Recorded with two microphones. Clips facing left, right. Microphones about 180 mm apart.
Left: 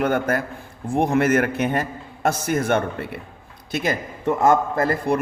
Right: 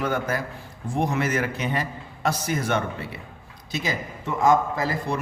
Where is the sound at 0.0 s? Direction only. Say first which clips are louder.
Left 5 dB; 55° left (ahead or behind).